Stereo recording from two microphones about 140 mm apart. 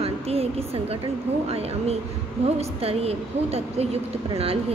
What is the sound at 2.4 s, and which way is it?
Speech, 45° right (ahead or behind).